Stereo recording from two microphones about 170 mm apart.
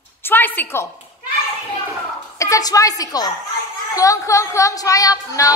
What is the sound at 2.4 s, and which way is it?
A woman's voice, 20° left (ahead or behind).